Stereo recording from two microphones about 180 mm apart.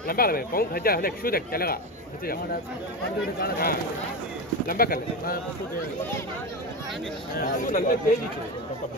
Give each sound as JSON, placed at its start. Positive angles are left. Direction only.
{"t": 0.0, "sound": "speech", "side_deg": 55}
{"t": 3.3, "sound": "speech", "side_deg": 55}
{"t": 7.3, "sound": "speech", "side_deg": 50}